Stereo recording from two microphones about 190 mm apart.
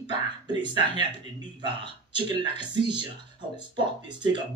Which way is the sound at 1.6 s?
25° right (ahead or behind).